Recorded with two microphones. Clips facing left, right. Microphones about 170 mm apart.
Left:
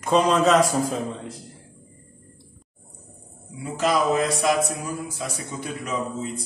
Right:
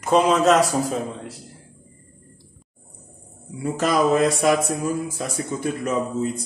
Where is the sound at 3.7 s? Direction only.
50° right (ahead or behind).